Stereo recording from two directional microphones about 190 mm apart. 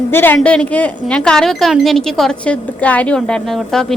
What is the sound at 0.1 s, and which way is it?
A woman's voice, 10° left (ahead or behind).